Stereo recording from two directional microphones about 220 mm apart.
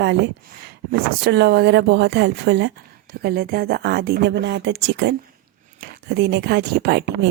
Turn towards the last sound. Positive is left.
turn(degrees=-50)  # may be behind; listen again after turning